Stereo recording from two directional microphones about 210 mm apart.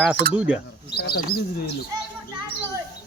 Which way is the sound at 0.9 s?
50° left (ahead or behind).